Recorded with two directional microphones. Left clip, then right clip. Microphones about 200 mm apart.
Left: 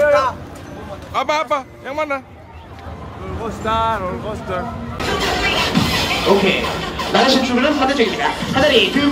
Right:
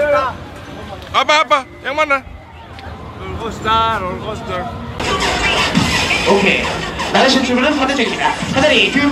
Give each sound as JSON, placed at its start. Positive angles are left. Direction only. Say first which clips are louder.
{"t": 1.1, "sound": "a man's voice", "louder": "right 6 dB", "side_deg": 5}
{"t": 3.4, "sound": "speech", "louder": "right 4 dB", "side_deg": 40}
{"t": 5.2, "sound": "speech", "louder": "right 2 dB", "side_deg": -25}